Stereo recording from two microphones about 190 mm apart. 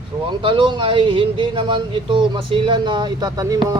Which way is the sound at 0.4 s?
25° right (ahead or behind).